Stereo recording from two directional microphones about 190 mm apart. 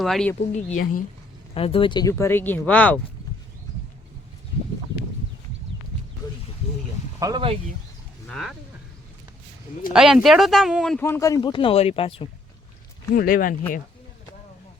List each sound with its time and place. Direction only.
0.0 s speech: centre (ahead or behind)
0.5 s speech: 40° left (ahead or behind)
1.5 s speech: 30° left (ahead or behind); by 3.0 s 10° left (ahead or behind)
6.2 s a sound: 20° left (ahead or behind)
7.2 s speech: 20° right (ahead or behind)
8.3 s speech: centre (ahead or behind)
9.9 s speech: 5° right (ahead or behind); by 12.3 s 30° left (ahead or behind)
13.1 s speech: 50° left (ahead or behind)